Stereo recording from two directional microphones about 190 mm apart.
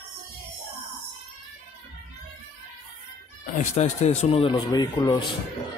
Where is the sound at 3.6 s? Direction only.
35° left (ahead or behind).